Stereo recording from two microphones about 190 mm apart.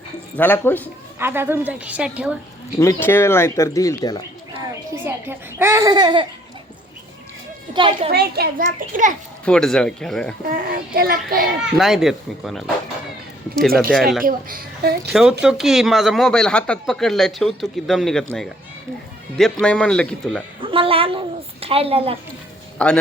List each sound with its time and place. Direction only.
0.3 s speech: 10° left (ahead or behind)
1.2 s a woman's voice: 10° right (ahead or behind)
2.7 s speech: 15° left (ahead or behind)
4.5 s a child's voice: 15° right (ahead or behind)
7.7 s a woman's voice: 25° right (ahead or behind)
8.1 s a child's voice: 55° right (ahead or behind)
9.4 s speech: 5° left (ahead or behind)
10.5 s a child's voice: 50° right (ahead or behind)
11.6 s speech: centre (ahead or behind)
14.3 s a child's voice: 50° right (ahead or behind)
15.1 s speech: 5° right (ahead or behind)
19.6 s speech: 5° left (ahead or behind)
20.6 s a woman's voice: 30° right (ahead or behind)
22.8 s speech: 5° left (ahead or behind)